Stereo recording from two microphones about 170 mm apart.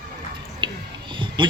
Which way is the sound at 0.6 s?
30° right (ahead or behind).